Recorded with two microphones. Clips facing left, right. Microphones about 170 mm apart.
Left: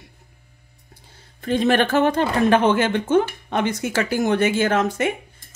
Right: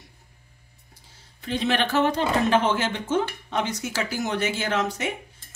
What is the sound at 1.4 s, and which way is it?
Speech, 50° left (ahead or behind).